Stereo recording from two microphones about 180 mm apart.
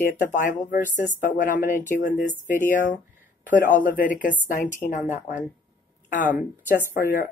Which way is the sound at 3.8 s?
45° left (ahead or behind).